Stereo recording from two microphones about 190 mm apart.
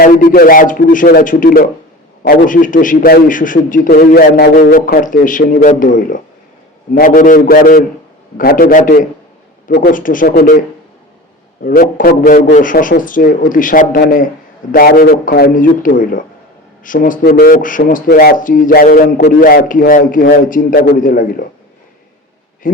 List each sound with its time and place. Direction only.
0.0 s a man's voice: 50° left (ahead or behind)
4.7 s speech: 45° left (ahead or behind)
11.6 s speech: 50° left (ahead or behind)
22.6 s speech: 45° left (ahead or behind)